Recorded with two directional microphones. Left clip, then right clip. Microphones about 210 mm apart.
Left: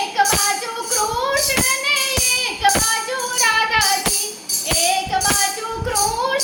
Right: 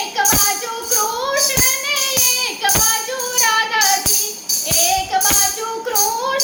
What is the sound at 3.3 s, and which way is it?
Music, centre (ahead or behind).